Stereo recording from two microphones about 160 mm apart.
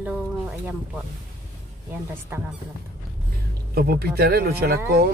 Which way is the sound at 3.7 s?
70° right (ahead or behind).